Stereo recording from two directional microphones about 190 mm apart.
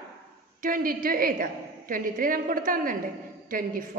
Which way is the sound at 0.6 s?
45° right (ahead or behind).